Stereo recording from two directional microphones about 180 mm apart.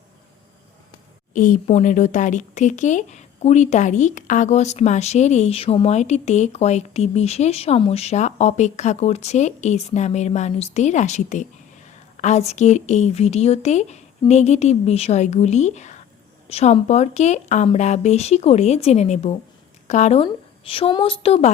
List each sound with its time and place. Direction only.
1.3 s speech: 45° left (ahead or behind)